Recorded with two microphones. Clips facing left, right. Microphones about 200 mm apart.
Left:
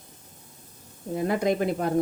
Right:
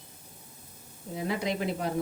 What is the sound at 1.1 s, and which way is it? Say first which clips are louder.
Speech: left 7 dB; 50° left (ahead or behind).